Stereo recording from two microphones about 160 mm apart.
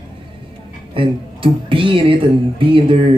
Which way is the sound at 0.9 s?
35° right (ahead or behind).